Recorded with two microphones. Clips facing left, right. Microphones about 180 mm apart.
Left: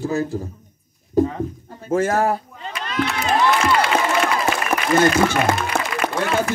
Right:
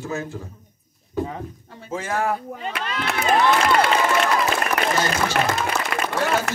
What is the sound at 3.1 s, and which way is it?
Speech, 50° right (ahead or behind).